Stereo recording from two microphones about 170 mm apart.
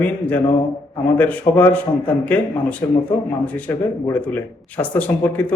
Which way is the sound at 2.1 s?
10° left (ahead or behind).